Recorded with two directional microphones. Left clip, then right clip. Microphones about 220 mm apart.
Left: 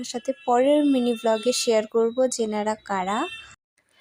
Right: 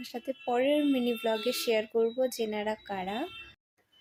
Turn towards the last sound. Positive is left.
turn(degrees=25)  # may be behind; listen again after turning